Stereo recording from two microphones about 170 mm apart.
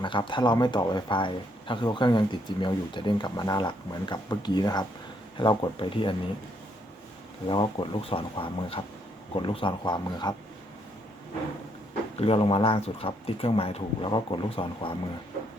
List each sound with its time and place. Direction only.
0.0 s speech: 30° left (ahead or behind)
7.4 s speech: 30° left (ahead or behind)
12.2 s speech: 30° left (ahead or behind)